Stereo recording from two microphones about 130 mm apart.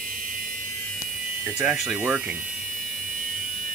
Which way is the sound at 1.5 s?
5° right (ahead or behind).